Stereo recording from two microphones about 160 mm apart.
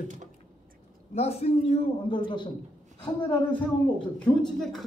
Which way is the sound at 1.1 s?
40° left (ahead or behind).